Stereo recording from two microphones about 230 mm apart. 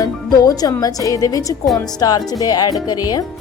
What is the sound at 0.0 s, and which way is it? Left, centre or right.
Speech, centre.